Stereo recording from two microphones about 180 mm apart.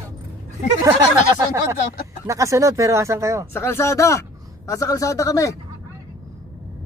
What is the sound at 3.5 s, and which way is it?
Speech, 15° left (ahead or behind).